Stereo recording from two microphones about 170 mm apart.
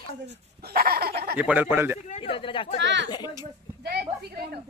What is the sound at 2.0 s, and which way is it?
Speech, 35° left (ahead or behind).